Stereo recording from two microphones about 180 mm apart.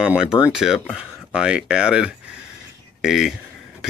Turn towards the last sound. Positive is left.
turn(degrees=0)  # may be behind; listen again after turning